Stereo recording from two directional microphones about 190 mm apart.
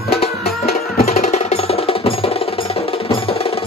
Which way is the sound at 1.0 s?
35° left (ahead or behind).